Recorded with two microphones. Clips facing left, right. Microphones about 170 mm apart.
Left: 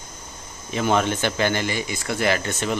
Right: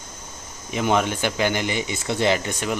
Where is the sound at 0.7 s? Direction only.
15° right (ahead or behind).